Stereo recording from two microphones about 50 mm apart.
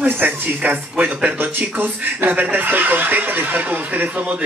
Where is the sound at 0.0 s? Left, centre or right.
Right.